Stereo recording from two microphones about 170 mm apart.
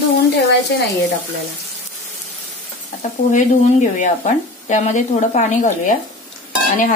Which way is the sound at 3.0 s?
45° left (ahead or behind).